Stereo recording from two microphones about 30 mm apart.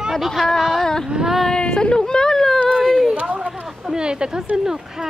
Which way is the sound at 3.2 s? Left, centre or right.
Right.